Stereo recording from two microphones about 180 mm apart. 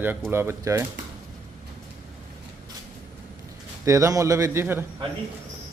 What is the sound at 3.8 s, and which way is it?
Speech, 15° right (ahead or behind).